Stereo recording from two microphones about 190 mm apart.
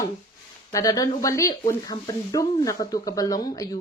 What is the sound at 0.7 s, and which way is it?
Speech, 20° left (ahead or behind).